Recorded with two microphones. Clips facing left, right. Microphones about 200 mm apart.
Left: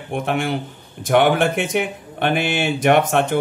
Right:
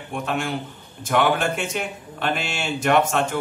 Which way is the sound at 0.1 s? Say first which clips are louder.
Left 4 dB; 60° left (ahead or behind).